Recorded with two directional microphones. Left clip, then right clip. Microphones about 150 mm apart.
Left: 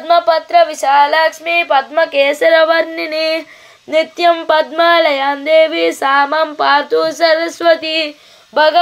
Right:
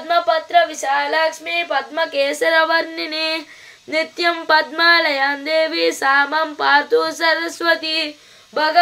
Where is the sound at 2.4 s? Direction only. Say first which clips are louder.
Left 6 dB; 5° left (ahead or behind).